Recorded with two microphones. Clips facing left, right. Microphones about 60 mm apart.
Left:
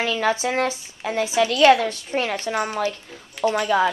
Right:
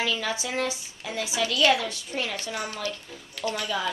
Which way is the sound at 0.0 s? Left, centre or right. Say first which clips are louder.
Left 7 dB; left.